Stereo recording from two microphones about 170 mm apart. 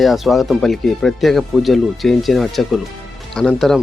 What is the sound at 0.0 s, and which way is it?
Speech, centre (ahead or behind).